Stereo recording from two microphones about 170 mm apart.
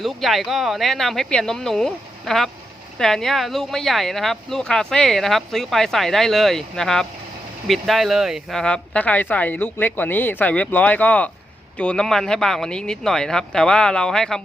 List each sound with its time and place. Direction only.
0.0 s speech: centre (ahead or behind)